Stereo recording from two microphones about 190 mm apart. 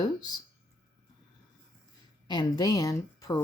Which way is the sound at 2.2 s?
20° left (ahead or behind).